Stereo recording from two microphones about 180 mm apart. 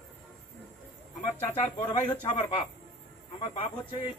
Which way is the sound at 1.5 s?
35° left (ahead or behind).